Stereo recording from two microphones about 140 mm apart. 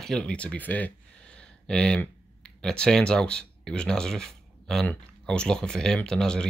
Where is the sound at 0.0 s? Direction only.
5° left (ahead or behind).